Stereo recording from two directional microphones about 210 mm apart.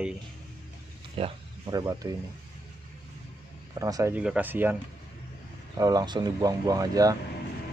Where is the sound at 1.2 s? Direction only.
25° right (ahead or behind).